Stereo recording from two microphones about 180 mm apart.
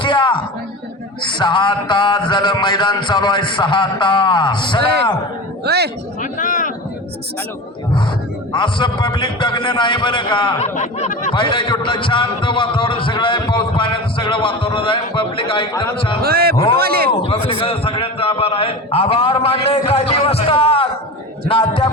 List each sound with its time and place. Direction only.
0.0 s a sound: 25° left (ahead or behind)
1.2 s a man's voice: 25° left (ahead or behind)
5.6 s a man's voice: 65° right (ahead or behind)
6.3 s speech: 50° left (ahead or behind)
8.5 s a man's voice: 25° left (ahead or behind)
10.6 s a man's voice: 40° left (ahead or behind)
11.3 s a man's voice: 25° left (ahead or behind)
16.2 s a man's voice: 55° right (ahead or behind)
17.2 s a man's voice: 30° left (ahead or behind)